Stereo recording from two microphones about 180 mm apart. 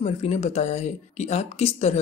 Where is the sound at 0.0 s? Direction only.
35° left (ahead or behind).